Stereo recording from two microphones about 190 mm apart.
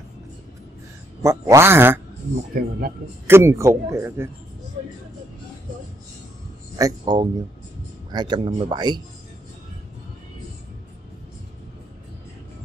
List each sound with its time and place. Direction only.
1.2 s a man's voice: 15° right (ahead or behind)
2.6 s speech: 50° right (ahead or behind)
3.3 s a man's voice: 15° right (ahead or behind)
6.8 s speech: 20° right (ahead or behind)